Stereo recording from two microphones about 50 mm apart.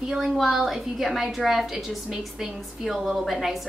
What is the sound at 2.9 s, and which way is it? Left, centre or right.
Speech, centre.